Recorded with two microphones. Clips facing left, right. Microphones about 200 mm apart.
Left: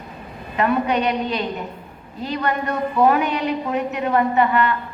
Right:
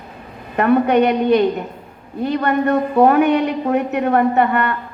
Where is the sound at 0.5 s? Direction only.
55° right (ahead or behind).